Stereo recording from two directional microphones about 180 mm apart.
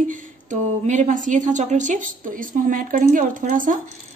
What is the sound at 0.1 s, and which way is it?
A woman's voice, 45° right (ahead or behind).